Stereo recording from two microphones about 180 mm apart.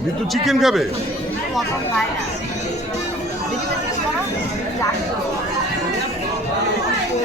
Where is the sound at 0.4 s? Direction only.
Centre (ahead or behind).